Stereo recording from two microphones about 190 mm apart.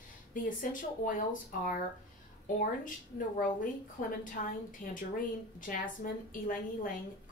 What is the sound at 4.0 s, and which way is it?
A woman's voice, 45° left (ahead or behind).